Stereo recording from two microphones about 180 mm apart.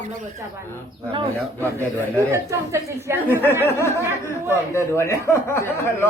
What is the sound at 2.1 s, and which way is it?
A woman's voice, 15° right (ahead or behind).